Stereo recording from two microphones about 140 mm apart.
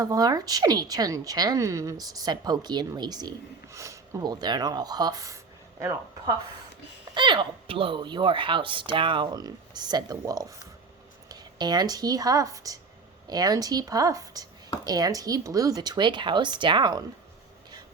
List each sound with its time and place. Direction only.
0.0 s a woman's voice: 25° right (ahead or behind)
7.1 s a woman's voice: 35° right (ahead or behind)